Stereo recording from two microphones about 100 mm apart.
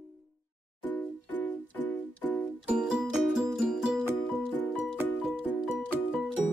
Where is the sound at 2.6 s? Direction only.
10° right (ahead or behind).